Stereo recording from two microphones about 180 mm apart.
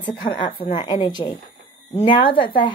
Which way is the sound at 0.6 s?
30° left (ahead or behind).